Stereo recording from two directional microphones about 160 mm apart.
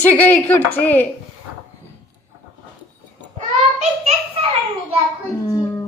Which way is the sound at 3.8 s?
40° right (ahead or behind).